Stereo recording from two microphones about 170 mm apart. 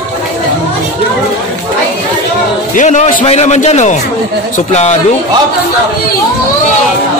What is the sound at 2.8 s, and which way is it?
A man's voice, 45° left (ahead or behind).